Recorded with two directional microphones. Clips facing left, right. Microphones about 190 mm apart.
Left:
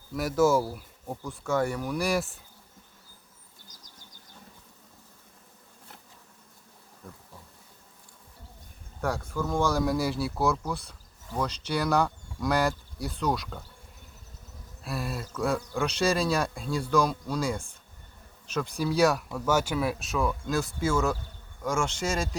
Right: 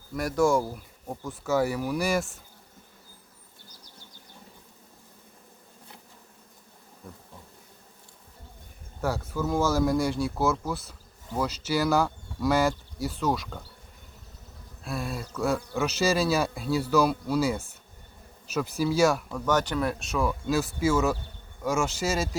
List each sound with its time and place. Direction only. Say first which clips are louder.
0.1 s speech: even; centre (ahead or behind)
3.7 s a sound: right 2 dB; 45° left (ahead or behind)
7.0 s bee: right 1 dB; centre (ahead or behind)
9.0 s speech: right 1 dB; 5° right (ahead or behind)
14.8 s speech: right 1 dB; centre (ahead or behind)